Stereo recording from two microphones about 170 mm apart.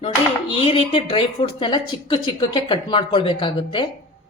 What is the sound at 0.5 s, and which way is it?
A woman's voice, 30° left (ahead or behind).